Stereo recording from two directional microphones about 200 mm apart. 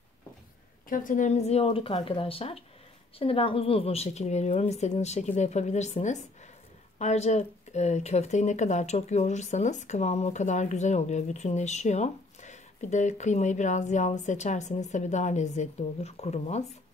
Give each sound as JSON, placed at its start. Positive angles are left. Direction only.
{"t": 0.8, "sound": "speech", "side_deg": 40}